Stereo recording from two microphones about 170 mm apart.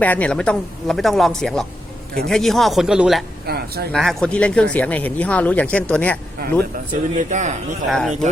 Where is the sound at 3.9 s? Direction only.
Centre (ahead or behind).